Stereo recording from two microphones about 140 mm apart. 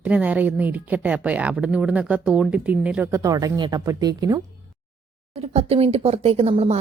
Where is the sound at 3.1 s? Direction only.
25° right (ahead or behind).